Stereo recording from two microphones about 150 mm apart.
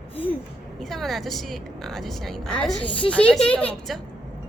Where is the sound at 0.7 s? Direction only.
Centre (ahead or behind).